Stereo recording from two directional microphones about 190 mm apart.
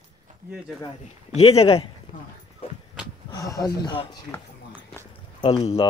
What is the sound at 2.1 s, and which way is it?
Clip-clop, 25° left (ahead or behind).